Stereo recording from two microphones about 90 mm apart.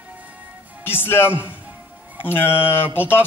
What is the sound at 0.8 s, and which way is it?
A man's voice, 25° left (ahead or behind).